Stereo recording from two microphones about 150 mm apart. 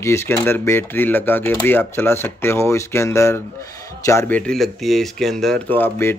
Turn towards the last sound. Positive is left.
turn(degrees=15)  # may be behind; listen again after turning